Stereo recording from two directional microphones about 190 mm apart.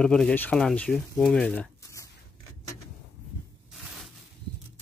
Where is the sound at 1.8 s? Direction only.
15° left (ahead or behind).